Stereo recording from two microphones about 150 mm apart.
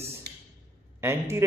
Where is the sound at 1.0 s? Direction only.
15° right (ahead or behind).